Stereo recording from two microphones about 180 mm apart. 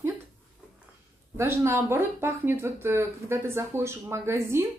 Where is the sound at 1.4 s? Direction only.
15° right (ahead or behind).